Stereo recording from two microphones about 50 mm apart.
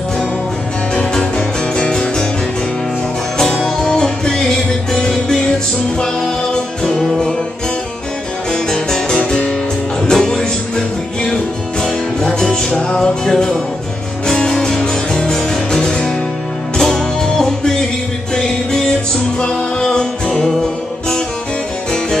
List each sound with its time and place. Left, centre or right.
1.8 s music: centre
3.6 s music: centre
8.5 s music: centre
9.2 s music: left
10.0 s music: centre
11.8 s music: centre